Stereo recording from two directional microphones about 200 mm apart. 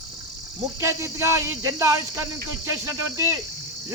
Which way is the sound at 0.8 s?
15° right (ahead or behind).